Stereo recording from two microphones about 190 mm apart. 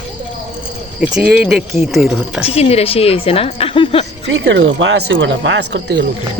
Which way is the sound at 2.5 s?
30° left (ahead or behind).